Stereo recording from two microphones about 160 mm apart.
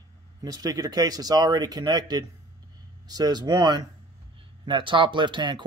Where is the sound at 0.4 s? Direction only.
25° right (ahead or behind).